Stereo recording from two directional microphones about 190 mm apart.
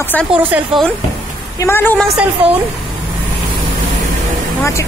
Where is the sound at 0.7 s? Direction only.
Centre (ahead or behind).